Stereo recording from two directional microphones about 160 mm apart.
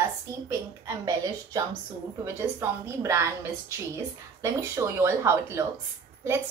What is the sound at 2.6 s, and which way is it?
A woman's voice, 15° right (ahead or behind).